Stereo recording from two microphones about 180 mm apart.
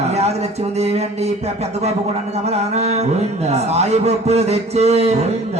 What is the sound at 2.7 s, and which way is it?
A man's voice, 35° right (ahead or behind).